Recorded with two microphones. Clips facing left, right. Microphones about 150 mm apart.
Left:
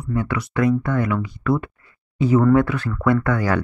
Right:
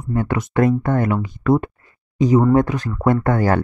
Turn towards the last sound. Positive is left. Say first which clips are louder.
# right 2 dB
turn(degrees=-45)  # may be behind; listen again after turning